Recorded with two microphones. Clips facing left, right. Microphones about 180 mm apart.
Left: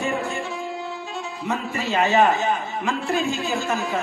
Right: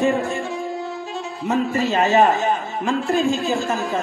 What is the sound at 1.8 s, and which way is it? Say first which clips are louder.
Speech: right 1 dB; 40° right (ahead or behind).